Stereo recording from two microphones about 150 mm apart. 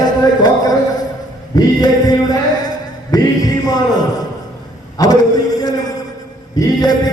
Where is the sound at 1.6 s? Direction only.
25° left (ahead or behind).